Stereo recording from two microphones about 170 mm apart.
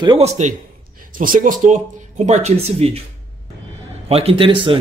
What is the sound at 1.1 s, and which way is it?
Speech, 55° right (ahead or behind).